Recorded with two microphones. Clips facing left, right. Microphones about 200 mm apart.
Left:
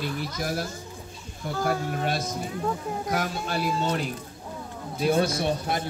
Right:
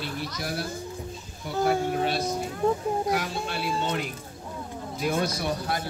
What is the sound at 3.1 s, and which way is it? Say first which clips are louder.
Speech: left 1 dB; 45° left (ahead or behind).